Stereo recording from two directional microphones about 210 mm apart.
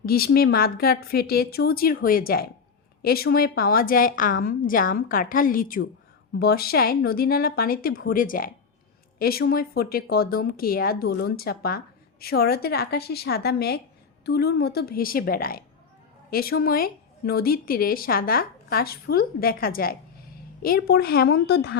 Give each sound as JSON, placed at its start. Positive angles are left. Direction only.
{"t": 0.0, "sound": "a woman's voice", "side_deg": 45}